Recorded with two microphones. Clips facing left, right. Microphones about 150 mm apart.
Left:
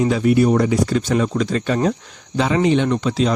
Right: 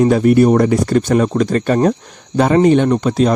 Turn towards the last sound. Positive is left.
turn(degrees=-50)  # may be behind; listen again after turning